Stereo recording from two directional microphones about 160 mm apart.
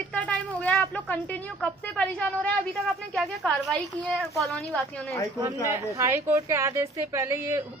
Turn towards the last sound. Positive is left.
turn(degrees=-15)  # may be behind; listen again after turning